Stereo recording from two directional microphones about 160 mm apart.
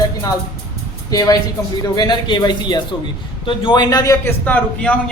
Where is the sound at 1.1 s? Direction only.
20° left (ahead or behind).